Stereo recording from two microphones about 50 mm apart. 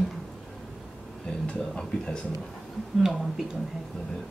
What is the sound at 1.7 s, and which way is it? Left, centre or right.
Speech, centre.